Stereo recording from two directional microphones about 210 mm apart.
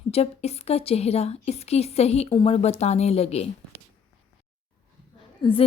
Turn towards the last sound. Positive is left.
turn(degrees=25)  # may be behind; listen again after turning